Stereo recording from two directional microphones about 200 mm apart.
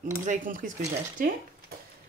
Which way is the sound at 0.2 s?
40° right (ahead or behind).